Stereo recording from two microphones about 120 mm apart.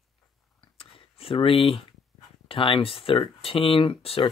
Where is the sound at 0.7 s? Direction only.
50° left (ahead or behind).